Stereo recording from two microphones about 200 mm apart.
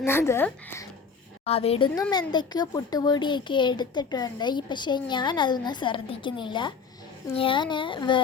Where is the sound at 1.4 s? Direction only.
30° left (ahead or behind).